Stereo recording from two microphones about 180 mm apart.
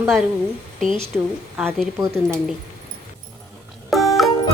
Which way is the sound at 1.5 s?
10° right (ahead or behind).